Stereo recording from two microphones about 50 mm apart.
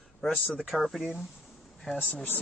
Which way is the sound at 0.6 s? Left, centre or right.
Centre.